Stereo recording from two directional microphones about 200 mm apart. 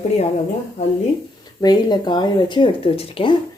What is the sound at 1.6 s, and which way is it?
Speech, 20° left (ahead or behind).